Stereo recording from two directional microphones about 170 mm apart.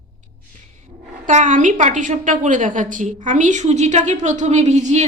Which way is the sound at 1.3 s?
45° right (ahead or behind).